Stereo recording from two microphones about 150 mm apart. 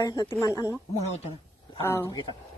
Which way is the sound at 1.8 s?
15° left (ahead or behind).